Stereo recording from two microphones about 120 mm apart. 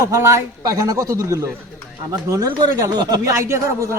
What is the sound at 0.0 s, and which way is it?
Speech, 25° right (ahead or behind).